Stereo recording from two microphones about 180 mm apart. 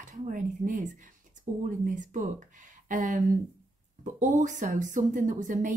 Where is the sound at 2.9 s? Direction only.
45° right (ahead or behind).